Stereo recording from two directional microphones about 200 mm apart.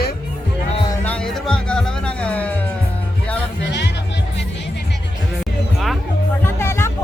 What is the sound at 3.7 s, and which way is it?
Music, 60° left (ahead or behind).